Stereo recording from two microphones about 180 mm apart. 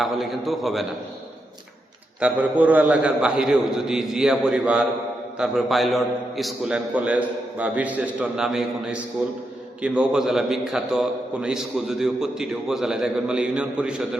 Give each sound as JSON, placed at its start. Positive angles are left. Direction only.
{"t": 0.0, "sound": "a man's voice", "side_deg": 0}
{"t": 2.2, "sound": "a man's voice", "side_deg": -10}